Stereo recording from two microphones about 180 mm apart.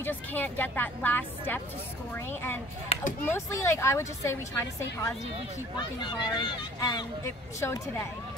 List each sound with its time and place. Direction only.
0.0 s a woman's voice: 10° left (ahead or behind)
2.9 s speech: 45° left (ahead or behind)
3.3 s a woman's voice: 15° left (ahead or behind)
5.8 s speech: 25° left (ahead or behind)